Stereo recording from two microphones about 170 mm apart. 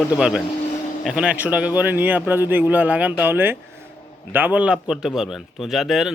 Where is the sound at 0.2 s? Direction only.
5° right (ahead or behind).